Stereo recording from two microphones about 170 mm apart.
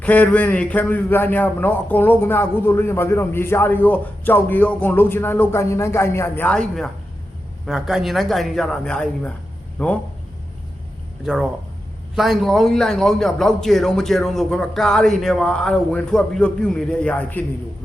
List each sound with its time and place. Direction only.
0.0 s a man's voice: 10° left (ahead or behind)
11.3 s a man's voice: 5° right (ahead or behind)